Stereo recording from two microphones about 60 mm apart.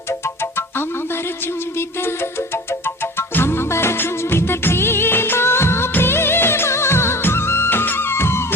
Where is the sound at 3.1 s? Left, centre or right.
Left.